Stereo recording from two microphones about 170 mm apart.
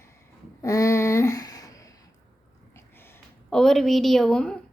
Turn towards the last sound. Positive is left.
turn(degrees=5)  # may be behind; listen again after turning